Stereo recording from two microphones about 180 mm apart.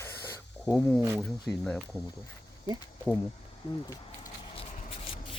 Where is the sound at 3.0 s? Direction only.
10° left (ahead or behind).